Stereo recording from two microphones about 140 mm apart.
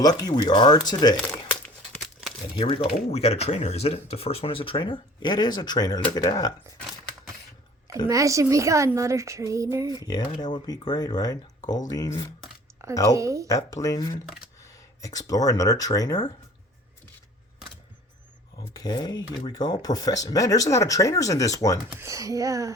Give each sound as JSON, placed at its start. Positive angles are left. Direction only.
{"t": 0.0, "sound": "speech", "side_deg": 30}
{"t": 1.2, "sound": "crumpling", "side_deg": 5}
{"t": 2.6, "sound": "speech", "side_deg": 35}
{"t": 3.1, "sound": "speech", "side_deg": 50}
{"t": 8.0, "sound": "a sound", "side_deg": -25}
{"t": 10.1, "sound": "speech", "side_deg": 30}
{"t": 12.8, "sound": "a sound", "side_deg": -20}
{"t": 13.5, "sound": "speech", "side_deg": 25}
{"t": 18.7, "sound": "speech", "side_deg": 30}
{"t": 21.8, "sound": "a sound", "side_deg": -20}